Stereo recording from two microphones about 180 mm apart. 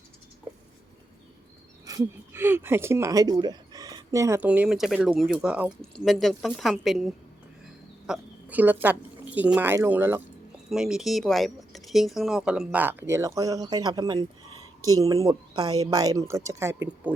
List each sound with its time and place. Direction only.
1.8 s speech: 20° right (ahead or behind)